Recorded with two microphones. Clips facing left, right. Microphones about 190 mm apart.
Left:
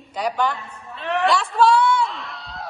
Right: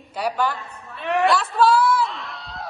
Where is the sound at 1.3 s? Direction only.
Centre (ahead or behind).